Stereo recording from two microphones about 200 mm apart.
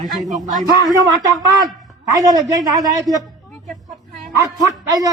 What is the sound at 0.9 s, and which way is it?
A man's voice, 20° right (ahead or behind).